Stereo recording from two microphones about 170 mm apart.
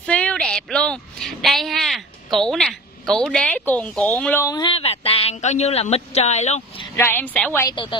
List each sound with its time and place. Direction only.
0.0 s a sound: 5° left (ahead or behind)
4.2 s a woman's voice: 15° left (ahead or behind)
4.7 s speech: 35° left (ahead or behind)
7.0 s a woman's voice: 10° left (ahead or behind)
7.7 s a woman's voice: 30° left (ahead or behind)